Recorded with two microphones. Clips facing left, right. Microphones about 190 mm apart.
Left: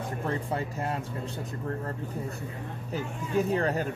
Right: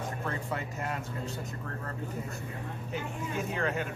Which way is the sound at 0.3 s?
30° left (ahead or behind).